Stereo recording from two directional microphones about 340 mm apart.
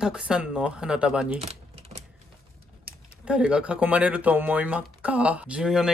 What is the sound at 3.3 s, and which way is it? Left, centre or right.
Speech, centre.